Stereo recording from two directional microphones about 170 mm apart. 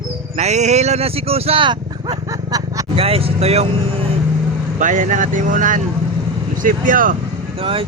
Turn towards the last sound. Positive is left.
turn(degrees=-35)  # may be behind; listen again after turning